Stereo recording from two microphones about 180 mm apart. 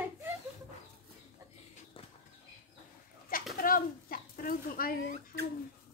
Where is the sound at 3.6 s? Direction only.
50° left (ahead or behind).